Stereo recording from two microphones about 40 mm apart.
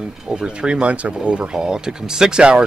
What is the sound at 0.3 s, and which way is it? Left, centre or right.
Speech, right.